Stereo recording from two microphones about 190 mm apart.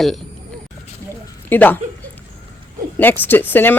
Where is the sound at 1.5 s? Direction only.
10° left (ahead or behind).